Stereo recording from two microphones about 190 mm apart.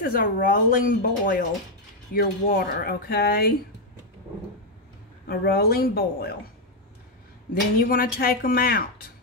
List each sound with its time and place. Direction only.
0.0 s speech: 50° left (ahead or behind)
5.2 s speech: 55° left (ahead or behind)
7.8 s speech: 50° left (ahead or behind)